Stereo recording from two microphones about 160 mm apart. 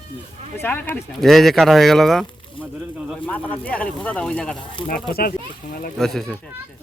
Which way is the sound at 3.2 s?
10° left (ahead or behind).